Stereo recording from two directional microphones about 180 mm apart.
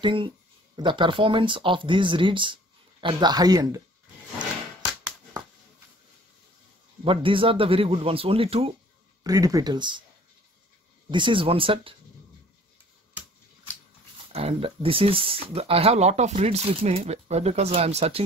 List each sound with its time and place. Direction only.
0.0 s speech: 30° right (ahead or behind)
7.1 s speech: 30° right (ahead or behind)
9.2 s speech: 20° right (ahead or behind)
11.1 s speech: 25° right (ahead or behind)
14.3 s speech: 30° right (ahead or behind)